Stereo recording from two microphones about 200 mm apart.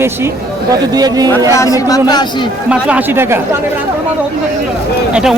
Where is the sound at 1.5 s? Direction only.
15° left (ahead or behind).